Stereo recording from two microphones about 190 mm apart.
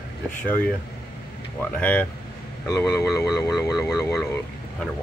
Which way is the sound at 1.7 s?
10° left (ahead or behind).